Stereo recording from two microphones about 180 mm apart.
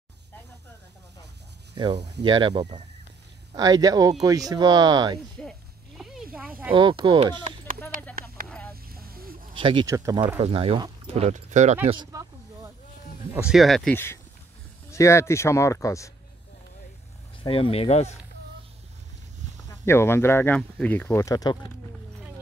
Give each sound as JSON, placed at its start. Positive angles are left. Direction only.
{"t": 2.0, "sound": "speech", "side_deg": -70}
{"t": 2.2, "sound": "speech", "side_deg": -25}
{"t": 5.4, "sound": "a sound", "side_deg": 0}
{"t": 6.7, "sound": "speech", "side_deg": -30}
{"t": 7.9, "sound": "a sound", "side_deg": -50}
{"t": 8.5, "sound": "a sound", "side_deg": 5}
{"t": 8.8, "sound": "vehicle", "side_deg": -55}
{"t": 9.5, "sound": "speech", "side_deg": -30}
{"t": 11.9, "sound": "a sound", "side_deg": -20}
{"t": 13.3, "sound": "speech", "side_deg": -5}
{"t": 13.9, "sound": "speech", "side_deg": 15}
{"t": 17.4, "sound": "speech", "side_deg": 30}
{"t": 19.7, "sound": "speech", "side_deg": 15}